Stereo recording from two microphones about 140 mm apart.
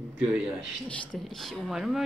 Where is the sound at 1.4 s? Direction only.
Centre (ahead or behind).